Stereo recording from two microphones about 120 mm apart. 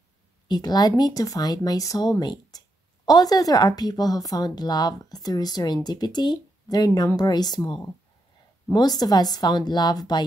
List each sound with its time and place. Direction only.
0.5 s speech: 35° left (ahead or behind)